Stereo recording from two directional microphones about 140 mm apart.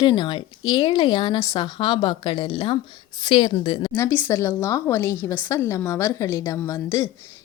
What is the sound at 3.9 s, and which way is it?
Speech, 20° left (ahead or behind).